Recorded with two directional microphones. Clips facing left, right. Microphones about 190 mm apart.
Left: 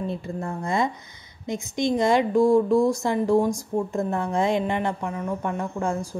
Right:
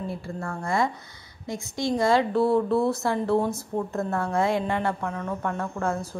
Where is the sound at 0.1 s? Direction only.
20° left (ahead or behind).